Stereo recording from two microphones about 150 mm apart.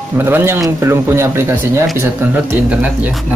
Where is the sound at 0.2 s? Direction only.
15° right (ahead or behind).